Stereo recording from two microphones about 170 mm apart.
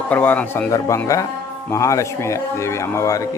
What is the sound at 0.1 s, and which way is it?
A man's voice, 10° left (ahead or behind).